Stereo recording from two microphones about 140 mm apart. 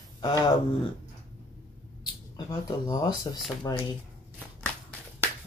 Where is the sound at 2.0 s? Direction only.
25° left (ahead or behind).